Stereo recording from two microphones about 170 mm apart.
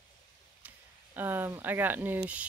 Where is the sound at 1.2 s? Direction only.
10° right (ahead or behind).